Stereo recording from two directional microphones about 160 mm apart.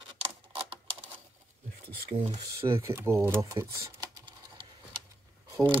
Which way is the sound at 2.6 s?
15° right (ahead or behind).